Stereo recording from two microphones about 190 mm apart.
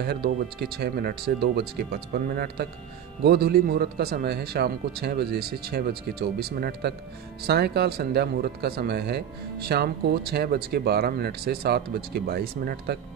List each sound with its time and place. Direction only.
0.0 s speech: 55° right (ahead or behind)